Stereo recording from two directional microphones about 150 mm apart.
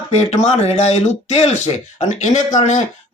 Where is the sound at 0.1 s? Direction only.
45° left (ahead or behind).